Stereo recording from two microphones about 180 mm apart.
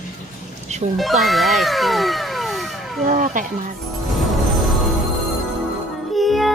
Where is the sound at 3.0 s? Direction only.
45° right (ahead or behind).